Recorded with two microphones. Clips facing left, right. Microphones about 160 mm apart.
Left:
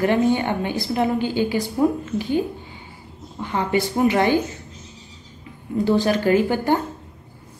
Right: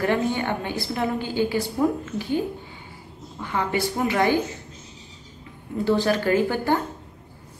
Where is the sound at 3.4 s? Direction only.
20° left (ahead or behind).